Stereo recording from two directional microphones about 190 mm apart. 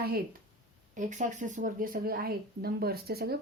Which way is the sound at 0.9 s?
40° right (ahead or behind).